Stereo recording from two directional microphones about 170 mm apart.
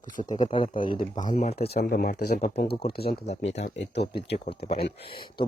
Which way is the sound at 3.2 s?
40° left (ahead or behind).